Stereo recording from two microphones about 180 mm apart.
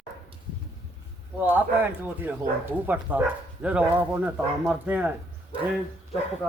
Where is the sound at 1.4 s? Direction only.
10° right (ahead or behind).